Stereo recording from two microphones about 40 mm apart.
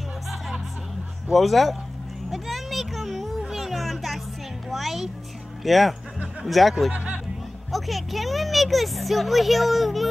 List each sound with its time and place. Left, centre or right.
1.3 s speech: centre
2.3 s a sound: centre
3.4 s music: centre
5.6 s speech: centre
6.9 s speech: right
7.7 s speech: centre